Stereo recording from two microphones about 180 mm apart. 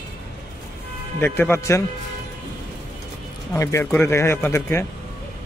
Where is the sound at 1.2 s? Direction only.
10° left (ahead or behind).